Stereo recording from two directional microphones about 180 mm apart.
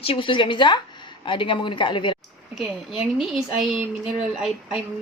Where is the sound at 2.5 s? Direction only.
Centre (ahead or behind).